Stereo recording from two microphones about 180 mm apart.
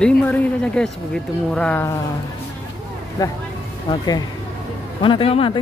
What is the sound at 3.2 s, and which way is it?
Speech, 20° left (ahead or behind).